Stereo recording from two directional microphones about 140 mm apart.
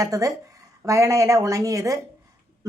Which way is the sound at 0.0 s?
25° right (ahead or behind).